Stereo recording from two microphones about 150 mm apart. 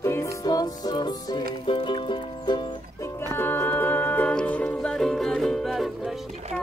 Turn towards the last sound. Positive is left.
turn(degrees=0)  # may be behind; listen again after turning